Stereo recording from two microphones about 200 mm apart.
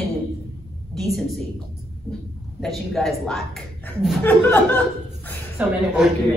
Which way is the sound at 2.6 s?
Centre (ahead or behind).